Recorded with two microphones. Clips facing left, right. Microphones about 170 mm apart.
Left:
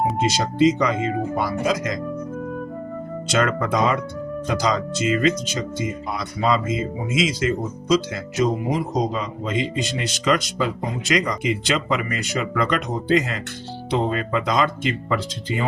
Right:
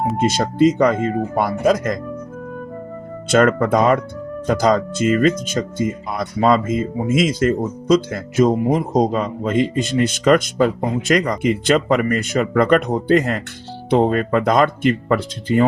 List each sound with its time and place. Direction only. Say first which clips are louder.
0.2 s speech: right 5 dB; 55° right (ahead or behind)
3.2 s speech: right 7 dB; 55° right (ahead or behind)